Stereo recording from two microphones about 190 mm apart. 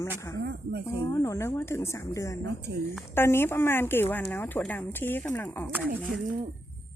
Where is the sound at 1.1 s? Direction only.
15° left (ahead or behind).